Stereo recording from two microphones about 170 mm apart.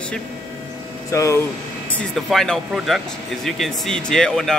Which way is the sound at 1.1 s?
15° left (ahead or behind).